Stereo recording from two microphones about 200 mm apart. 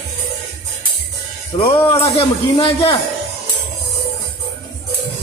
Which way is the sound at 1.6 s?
30° left (ahead or behind).